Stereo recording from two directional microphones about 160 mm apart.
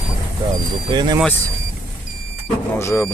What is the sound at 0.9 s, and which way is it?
Speech, 30° right (ahead or behind).